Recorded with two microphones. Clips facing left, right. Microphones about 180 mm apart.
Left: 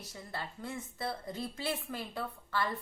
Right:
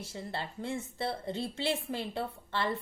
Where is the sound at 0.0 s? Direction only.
25° right (ahead or behind).